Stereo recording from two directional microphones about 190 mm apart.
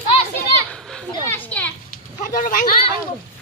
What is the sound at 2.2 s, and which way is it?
Speech, 45° left (ahead or behind).